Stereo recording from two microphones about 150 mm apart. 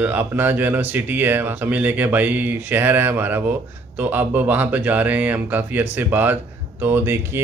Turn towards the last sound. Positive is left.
turn(degrees=-15)  # may be behind; listen again after turning